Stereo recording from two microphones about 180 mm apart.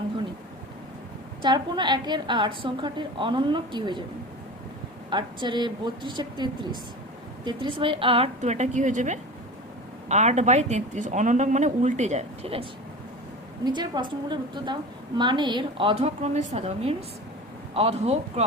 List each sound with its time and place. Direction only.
1.4 s a woman's voice: 25° right (ahead or behind)
5.1 s a woman's voice: 25° right (ahead or behind)
13.7 s a woman's voice: 25° right (ahead or behind)